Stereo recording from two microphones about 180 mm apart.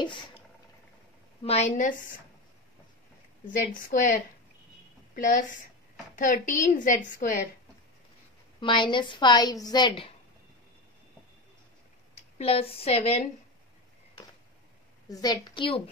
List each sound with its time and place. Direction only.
1.4 s a woman's voice: 35° left (ahead or behind)
3.9 s a woman's voice: 50° left (ahead or behind)
8.5 s a woman's voice: 25° left (ahead or behind)
12.4 s a woman's voice: 35° left (ahead or behind)
15.0 s a woman's voice: 20° left (ahead or behind)